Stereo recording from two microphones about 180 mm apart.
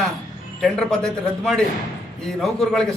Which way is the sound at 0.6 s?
5° left (ahead or behind).